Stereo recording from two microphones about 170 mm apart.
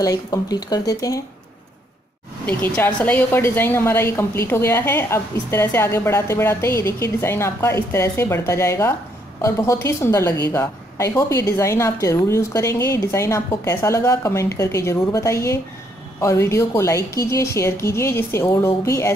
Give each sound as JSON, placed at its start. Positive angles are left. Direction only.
{"t": 0.0, "sound": "speech", "side_deg": 20}
{"t": 2.4, "sound": "a woman's voice", "side_deg": 10}